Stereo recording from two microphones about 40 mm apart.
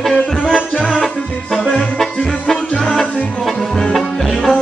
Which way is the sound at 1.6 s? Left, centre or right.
Centre.